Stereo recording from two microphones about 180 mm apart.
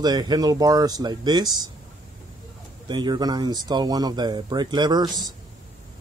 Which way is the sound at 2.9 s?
25° right (ahead or behind).